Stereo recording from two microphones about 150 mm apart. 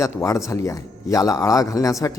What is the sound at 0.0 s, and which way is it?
Speech, 20° left (ahead or behind).